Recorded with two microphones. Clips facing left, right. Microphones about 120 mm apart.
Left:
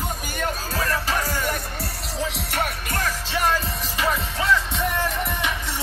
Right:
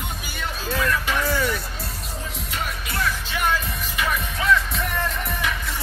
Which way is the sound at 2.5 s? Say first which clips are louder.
Left 3 dB; 60° left (ahead or behind).